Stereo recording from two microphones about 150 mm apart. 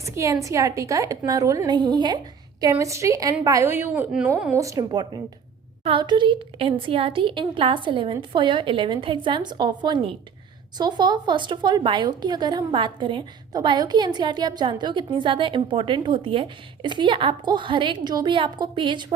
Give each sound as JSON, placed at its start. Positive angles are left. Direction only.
{"t": 0.0, "sound": "a woman's voice", "side_deg": -20}
{"t": 4.5, "sound": "a woman's voice", "side_deg": -20}